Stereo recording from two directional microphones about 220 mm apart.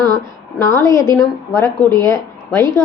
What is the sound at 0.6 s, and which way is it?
A woman's voice, 15° left (ahead or behind).